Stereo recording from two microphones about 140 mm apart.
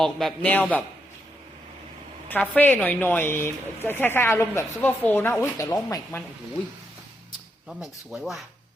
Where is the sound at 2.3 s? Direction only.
10° left (ahead or behind).